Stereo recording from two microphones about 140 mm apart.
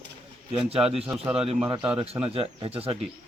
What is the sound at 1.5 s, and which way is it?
Speech, 45° right (ahead or behind).